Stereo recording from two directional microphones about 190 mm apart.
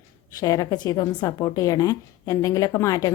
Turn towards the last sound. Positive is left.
turn(degrees=15)  # may be behind; listen again after turning